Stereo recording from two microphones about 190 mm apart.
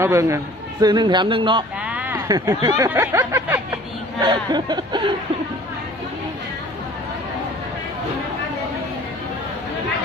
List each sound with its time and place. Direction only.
0.0 s a man's voice: 15° right (ahead or behind)
1.8 s speech: 10° right (ahead or behind)